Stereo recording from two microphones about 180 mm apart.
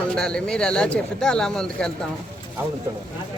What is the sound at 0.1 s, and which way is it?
Speech, 5° left (ahead or behind).